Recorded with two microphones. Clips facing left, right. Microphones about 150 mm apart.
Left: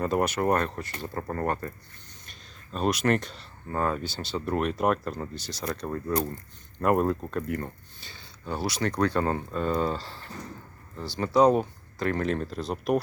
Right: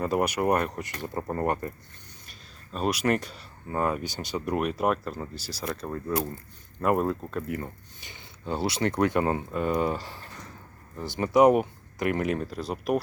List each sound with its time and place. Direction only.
0.0 s speech: 5° right (ahead or behind)
2.7 s speech: 5° right (ahead or behind)
8.0 s speech: 20° right (ahead or behind); by 13.0 s 5° right (ahead or behind)